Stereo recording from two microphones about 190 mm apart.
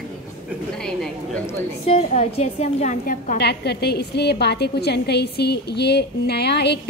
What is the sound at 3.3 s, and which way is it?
A woman's voice, 60° left (ahead or behind).